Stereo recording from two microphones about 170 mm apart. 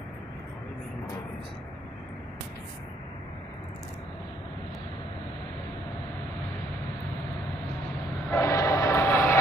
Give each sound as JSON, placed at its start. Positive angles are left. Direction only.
{"t": 8.3, "sound": "train", "side_deg": 15}